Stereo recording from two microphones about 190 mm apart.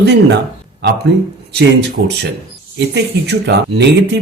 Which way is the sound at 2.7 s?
65° right (ahead or behind).